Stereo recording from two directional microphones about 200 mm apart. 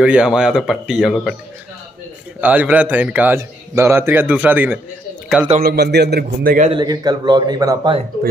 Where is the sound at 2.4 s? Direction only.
10° right (ahead or behind).